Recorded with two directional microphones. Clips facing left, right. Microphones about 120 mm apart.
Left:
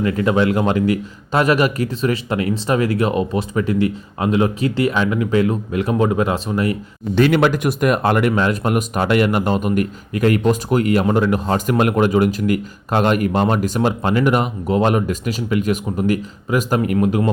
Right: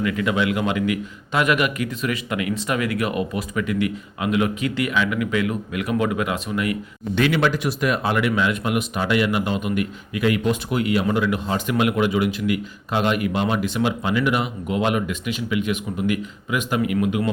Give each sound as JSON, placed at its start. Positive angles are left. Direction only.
{"t": 0.0, "sound": "a man's voice", "side_deg": 35}
{"t": 7.2, "sound": "speech", "side_deg": 50}